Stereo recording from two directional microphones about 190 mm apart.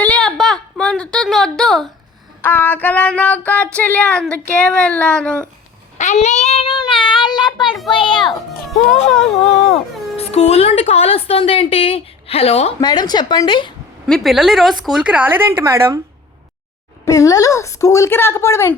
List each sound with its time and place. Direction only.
0.0 s a sound: 5° left (ahead or behind)
2.4 s child singing: 10° left (ahead or behind)
6.0 s child singing: 40° left (ahead or behind); by 7.7 s 25° left (ahead or behind)
7.9 s music: 25° left (ahead or behind)
8.7 s speech: centre (ahead or behind)
10.2 s a woman's voice: 35° left (ahead or behind)
14.1 s speech: centre (ahead or behind)
17.1 s child singing: 15° left (ahead or behind)